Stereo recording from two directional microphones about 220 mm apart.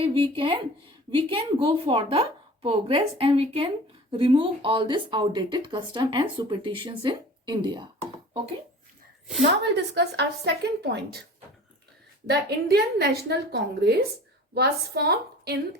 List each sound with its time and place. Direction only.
0.0 s speech: 20° right (ahead or behind)
9.4 s a woman's voice: 50° right (ahead or behind)
12.3 s a woman's voice: 50° right (ahead or behind)